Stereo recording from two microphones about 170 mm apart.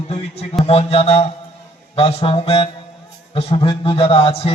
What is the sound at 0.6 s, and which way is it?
A man's voice, 35° left (ahead or behind).